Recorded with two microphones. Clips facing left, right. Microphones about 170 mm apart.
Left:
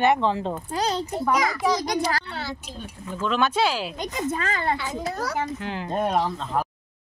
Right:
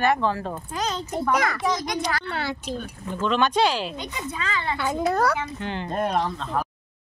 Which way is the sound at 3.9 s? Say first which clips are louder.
Left 5 dB; 40° left (ahead or behind).